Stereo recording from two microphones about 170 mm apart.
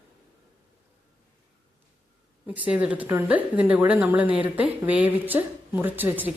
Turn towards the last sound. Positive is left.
turn(degrees=-10)  # may be behind; listen again after turning